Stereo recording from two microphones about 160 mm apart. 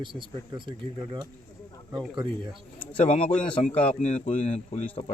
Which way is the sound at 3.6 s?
45° left (ahead or behind).